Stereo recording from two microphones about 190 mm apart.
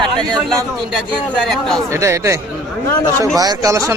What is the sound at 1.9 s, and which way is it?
Speech, 15° right (ahead or behind).